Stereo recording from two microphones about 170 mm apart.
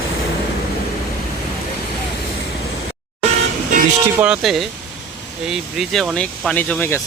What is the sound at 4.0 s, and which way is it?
Speech, 10° right (ahead or behind).